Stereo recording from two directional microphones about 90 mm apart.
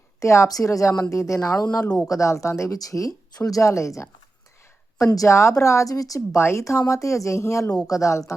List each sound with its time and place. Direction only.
0.2 s a woman's voice: 35° left (ahead or behind)
1.8 s speech: 10° left (ahead or behind)
2.0 s a woman's voice: 35° left (ahead or behind)